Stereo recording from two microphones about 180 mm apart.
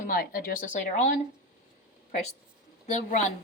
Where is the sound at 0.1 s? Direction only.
55° left (ahead or behind).